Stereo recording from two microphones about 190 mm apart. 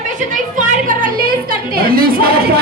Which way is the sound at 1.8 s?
50° right (ahead or behind).